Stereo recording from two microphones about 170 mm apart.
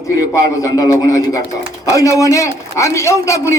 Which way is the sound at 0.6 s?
20° left (ahead or behind).